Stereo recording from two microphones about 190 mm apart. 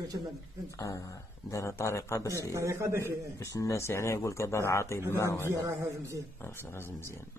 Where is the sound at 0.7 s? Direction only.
15° left (ahead or behind).